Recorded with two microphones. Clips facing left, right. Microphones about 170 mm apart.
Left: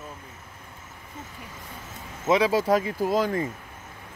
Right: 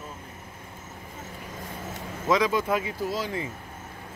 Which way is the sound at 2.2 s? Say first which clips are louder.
Left 2 dB; 25° left (ahead or behind).